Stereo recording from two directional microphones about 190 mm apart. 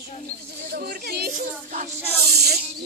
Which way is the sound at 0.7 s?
55° right (ahead or behind).